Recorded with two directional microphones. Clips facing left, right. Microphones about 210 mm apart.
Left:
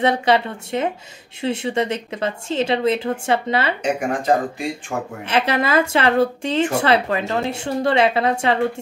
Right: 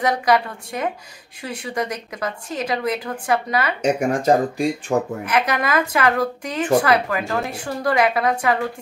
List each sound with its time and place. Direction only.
0.0 s a woman's voice: 25° left (ahead or behind)
3.8 s speech: 40° right (ahead or behind)
5.2 s a woman's voice: 30° left (ahead or behind)